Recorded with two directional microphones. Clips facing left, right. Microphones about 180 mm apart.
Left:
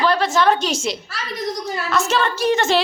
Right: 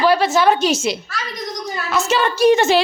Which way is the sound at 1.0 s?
30° left (ahead or behind).